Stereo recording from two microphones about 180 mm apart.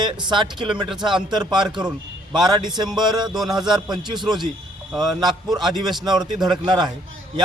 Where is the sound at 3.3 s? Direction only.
Centre (ahead or behind).